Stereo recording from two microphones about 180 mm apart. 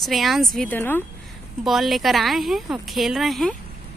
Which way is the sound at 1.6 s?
Centre (ahead or behind).